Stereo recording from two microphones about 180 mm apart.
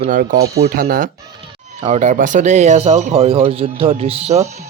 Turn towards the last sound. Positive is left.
turn(degrees=-35)  # may be behind; listen again after turning